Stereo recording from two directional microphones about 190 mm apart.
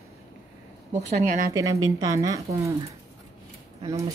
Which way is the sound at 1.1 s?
40° right (ahead or behind).